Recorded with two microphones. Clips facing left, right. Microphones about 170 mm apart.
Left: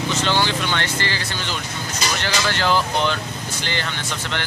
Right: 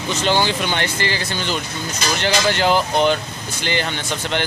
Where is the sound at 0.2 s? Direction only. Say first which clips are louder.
Right 5 dB; 15° right (ahead or behind).